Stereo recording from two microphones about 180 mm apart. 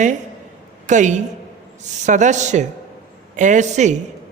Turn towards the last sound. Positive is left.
turn(degrees=-40)  # may be behind; listen again after turning